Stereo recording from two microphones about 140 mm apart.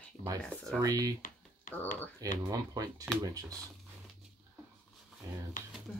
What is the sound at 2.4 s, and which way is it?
Speech, 25° right (ahead or behind).